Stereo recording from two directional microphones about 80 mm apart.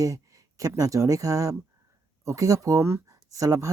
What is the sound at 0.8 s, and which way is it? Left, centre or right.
Speech, right.